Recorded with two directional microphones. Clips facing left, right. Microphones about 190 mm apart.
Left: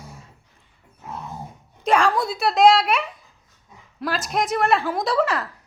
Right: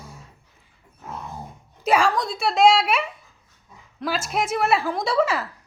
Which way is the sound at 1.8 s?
5° right (ahead or behind).